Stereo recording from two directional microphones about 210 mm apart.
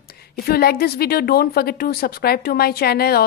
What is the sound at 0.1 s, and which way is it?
A woman's voice, 45° left (ahead or behind).